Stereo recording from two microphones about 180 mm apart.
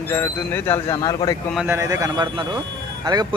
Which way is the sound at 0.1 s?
10° left (ahead or behind).